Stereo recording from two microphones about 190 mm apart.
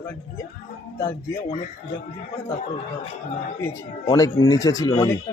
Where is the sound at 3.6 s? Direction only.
20° left (ahead or behind).